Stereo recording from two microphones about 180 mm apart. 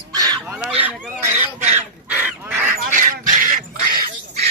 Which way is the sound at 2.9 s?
45° right (ahead or behind).